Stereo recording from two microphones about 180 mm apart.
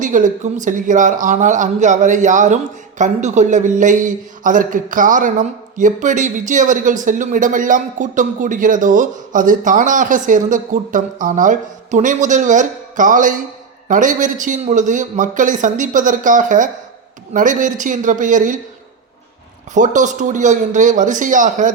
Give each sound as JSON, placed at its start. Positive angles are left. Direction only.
{"t": 0.0, "sound": "a man's voice", "side_deg": -45}
{"t": 19.7, "sound": "a man's voice", "side_deg": -45}